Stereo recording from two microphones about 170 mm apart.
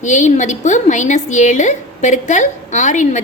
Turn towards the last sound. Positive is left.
turn(degrees=45)  # may be behind; listen again after turning